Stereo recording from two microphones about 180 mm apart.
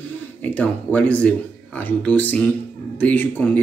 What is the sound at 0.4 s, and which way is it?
Speech, 10° left (ahead or behind).